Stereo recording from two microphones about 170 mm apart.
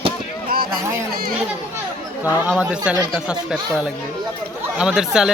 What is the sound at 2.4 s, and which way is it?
Speech, 5° right (ahead or behind).